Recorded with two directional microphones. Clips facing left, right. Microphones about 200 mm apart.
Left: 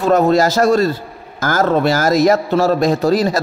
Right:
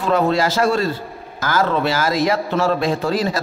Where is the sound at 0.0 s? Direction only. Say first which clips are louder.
Left 5 dB; 45° left (ahead or behind).